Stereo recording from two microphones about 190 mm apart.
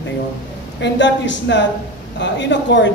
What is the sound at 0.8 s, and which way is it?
Speech, 70° left (ahead or behind).